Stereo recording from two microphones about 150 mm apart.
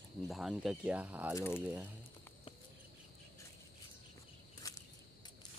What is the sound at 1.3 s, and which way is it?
Speech, 15° left (ahead or behind).